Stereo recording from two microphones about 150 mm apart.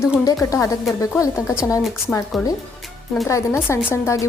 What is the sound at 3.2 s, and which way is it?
A woman's voice, 20° left (ahead or behind).